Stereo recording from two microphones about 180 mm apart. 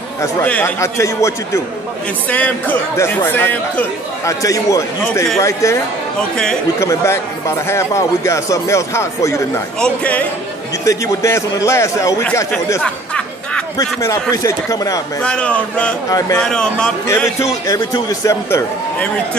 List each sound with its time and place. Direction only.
0.2 s a man's voice: 10° left (ahead or behind)
6.8 s a man's voice: 15° left (ahead or behind)
12.8 s music: 5° left (ahead or behind)
13.7 s speech: 20° left (ahead or behind)
15.2 s speech: 5° left (ahead or behind)
16.1 s speech: 20° left (ahead or behind)
16.3 s speech: 5° left (ahead or behind)
17.4 s a man's voice: 15° left (ahead or behind)